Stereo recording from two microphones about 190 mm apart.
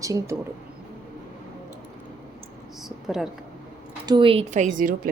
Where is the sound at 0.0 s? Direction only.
15° right (ahead or behind).